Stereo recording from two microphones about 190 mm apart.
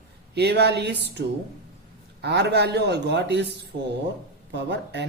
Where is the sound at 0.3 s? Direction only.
60° right (ahead or behind).